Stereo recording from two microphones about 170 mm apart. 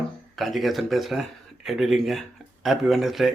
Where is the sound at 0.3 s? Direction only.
Centre (ahead or behind).